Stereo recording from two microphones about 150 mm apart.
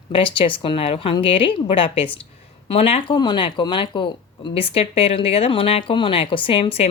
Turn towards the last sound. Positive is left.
turn(degrees=40)  # may be behind; listen again after turning